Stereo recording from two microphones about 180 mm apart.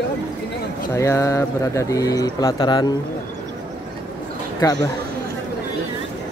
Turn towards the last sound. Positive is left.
turn(degrees=20)  # may be behind; listen again after turning